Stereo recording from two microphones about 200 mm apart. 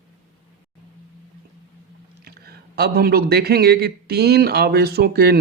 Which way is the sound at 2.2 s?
50° right (ahead or behind).